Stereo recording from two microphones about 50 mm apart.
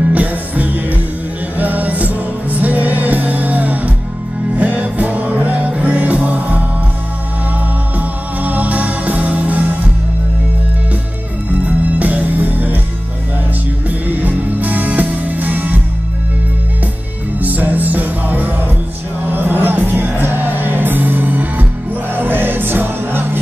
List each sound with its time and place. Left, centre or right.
0.0 s music: right
8.0 s music: right
11.6 s music: right
13.8 s music: right
17.4 s music: right